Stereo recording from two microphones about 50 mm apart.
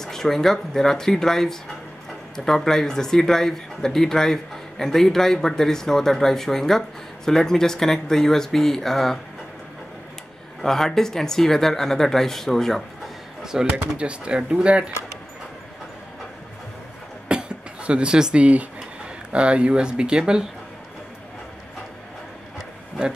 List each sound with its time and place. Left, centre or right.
0.0 s speech: centre
10.6 s speech: centre
13.4 s speech: centre
17.3 s a sound: centre
19.3 s speech: right
23.0 s speech: centre